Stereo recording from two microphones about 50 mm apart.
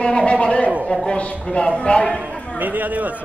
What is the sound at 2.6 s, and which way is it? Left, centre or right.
Speech, right.